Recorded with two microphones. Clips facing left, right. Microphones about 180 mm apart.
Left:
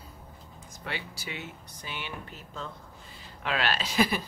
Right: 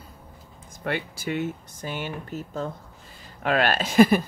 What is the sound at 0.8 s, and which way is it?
Speech, 50° right (ahead or behind).